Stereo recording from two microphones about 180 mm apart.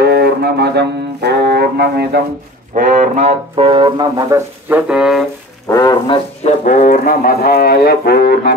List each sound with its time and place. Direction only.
0.0 s music: 60° right (ahead or behind)
2.7 s speech: 45° right (ahead or behind); by 4.4 s 25° right (ahead or behind)
4.6 s music: 5° right (ahead or behind)
5.7 s a sound: 20° left (ahead or behind)
6.4 s music: 45° left (ahead or behind)